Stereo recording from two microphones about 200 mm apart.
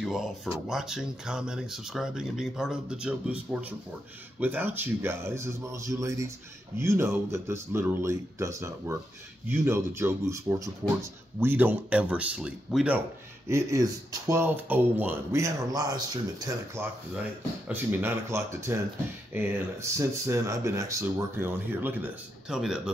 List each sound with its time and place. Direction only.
0.0 s speech: centre (ahead or behind)
4.4 s speech: 10° right (ahead or behind)